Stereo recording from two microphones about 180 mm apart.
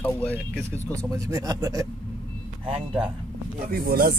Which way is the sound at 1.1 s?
15° right (ahead or behind).